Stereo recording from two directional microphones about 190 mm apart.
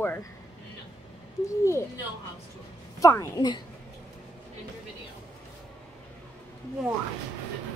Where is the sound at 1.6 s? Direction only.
15° left (ahead or behind).